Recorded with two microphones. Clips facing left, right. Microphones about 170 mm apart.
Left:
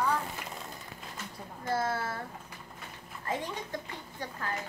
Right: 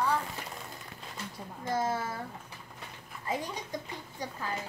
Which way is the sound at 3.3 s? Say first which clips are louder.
Even; 15° right (ahead or behind).